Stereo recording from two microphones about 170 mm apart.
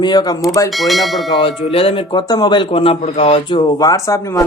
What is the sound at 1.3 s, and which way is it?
Speech, 30° left (ahead or behind).